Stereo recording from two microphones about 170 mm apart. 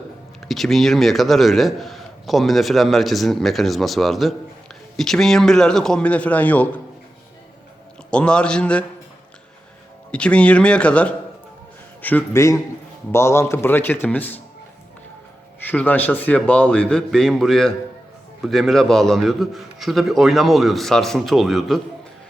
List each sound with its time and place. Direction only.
0.4 s speech: centre (ahead or behind)
8.1 s a man's voice: 5° left (ahead or behind)
10.1 s a man's voice: 5° left (ahead or behind)
15.6 s a man's voice: 10° left (ahead or behind)